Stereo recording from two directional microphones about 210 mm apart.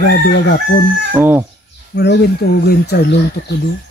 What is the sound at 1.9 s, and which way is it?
Speech, 55° left (ahead or behind).